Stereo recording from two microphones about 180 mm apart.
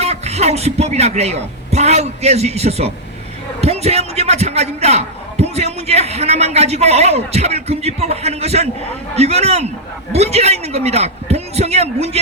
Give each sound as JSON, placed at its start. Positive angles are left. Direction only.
{"t": 0.0, "sound": "a man's voice", "side_deg": -35}